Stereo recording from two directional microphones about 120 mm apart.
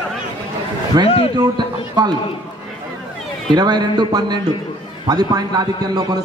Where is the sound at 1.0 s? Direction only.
55° left (ahead or behind).